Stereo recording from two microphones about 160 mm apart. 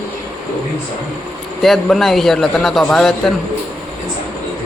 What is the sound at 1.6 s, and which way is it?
A man's voice, centre (ahead or behind).